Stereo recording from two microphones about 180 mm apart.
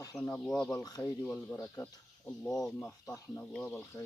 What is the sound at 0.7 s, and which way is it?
Speech, 20° left (ahead or behind).